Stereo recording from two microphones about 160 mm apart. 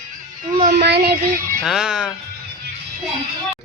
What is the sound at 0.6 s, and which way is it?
Speech, 80° right.